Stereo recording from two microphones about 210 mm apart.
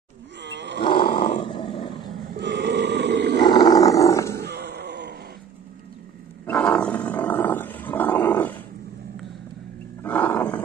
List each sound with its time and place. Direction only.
0.4 s roar: 55° right (ahead or behind)
1.0 s roar: 40° left (ahead or behind)
1.4 s roar: 25° left (ahead or behind)
2.3 s grunt: 55° right (ahead or behind)
3.4 s roar: 20° left (ahead or behind)
4.4 s grunt: 50° right (ahead or behind)
6.4 s roar: 5° left (ahead or behind)
10.0 s roaring cats: 5° left (ahead or behind)